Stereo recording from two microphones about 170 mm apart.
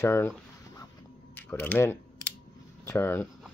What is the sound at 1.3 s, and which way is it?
Typing, 10° left (ahead or behind).